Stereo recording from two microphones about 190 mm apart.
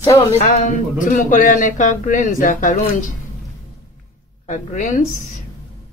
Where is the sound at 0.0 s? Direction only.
20° left (ahead or behind).